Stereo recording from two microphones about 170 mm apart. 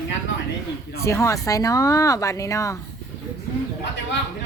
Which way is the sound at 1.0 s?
15° left (ahead or behind).